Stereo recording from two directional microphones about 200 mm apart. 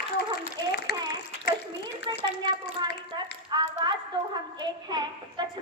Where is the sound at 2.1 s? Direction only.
25° right (ahead or behind).